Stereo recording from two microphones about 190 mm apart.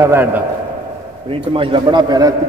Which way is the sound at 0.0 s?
10° right (ahead or behind).